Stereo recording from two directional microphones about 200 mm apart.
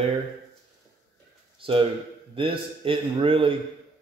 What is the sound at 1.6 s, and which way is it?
A man's voice, 25° right (ahead or behind).